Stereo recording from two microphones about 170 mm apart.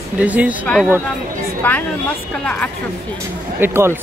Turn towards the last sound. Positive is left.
turn(degrees=-15)  # may be behind; listen again after turning